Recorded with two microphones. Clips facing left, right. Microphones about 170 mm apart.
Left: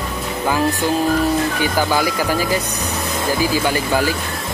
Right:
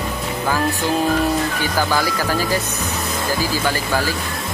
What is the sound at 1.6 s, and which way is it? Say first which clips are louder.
Speech: left 2 dB; 15° left (ahead or behind).